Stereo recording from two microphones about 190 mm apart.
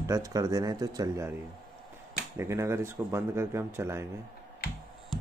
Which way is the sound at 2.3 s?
15° right (ahead or behind).